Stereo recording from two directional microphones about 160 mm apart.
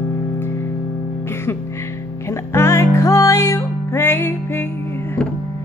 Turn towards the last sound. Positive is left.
turn(degrees=15)  # may be behind; listen again after turning